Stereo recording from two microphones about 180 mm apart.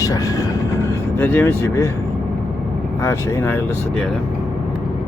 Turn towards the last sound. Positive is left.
turn(degrees=10)  # may be behind; listen again after turning